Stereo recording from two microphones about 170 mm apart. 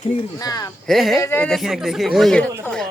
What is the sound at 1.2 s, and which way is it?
Speech, 10° left (ahead or behind).